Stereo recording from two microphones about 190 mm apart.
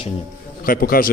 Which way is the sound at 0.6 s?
50° left (ahead or behind).